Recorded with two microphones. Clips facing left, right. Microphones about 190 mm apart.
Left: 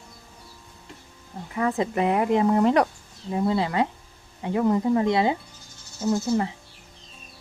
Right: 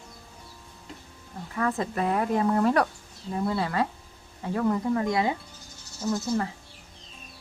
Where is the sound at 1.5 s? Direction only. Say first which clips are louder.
Left 4 dB; 15° left (ahead or behind).